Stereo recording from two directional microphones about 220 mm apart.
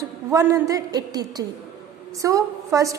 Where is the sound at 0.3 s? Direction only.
15° right (ahead or behind).